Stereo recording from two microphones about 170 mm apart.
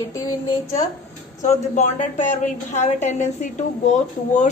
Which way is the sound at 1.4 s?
45° left (ahead or behind).